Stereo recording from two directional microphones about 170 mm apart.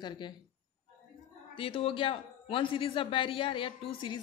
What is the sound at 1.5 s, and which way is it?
A woman's voice, 35° left (ahead or behind).